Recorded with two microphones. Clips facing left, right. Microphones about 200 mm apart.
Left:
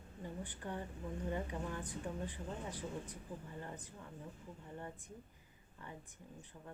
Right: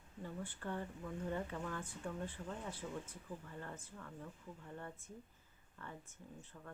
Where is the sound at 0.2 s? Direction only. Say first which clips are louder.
Even; 15° left (ahead or behind).